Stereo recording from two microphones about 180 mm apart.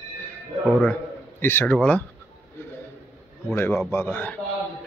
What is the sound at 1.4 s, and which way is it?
Speech, 10° left (ahead or behind).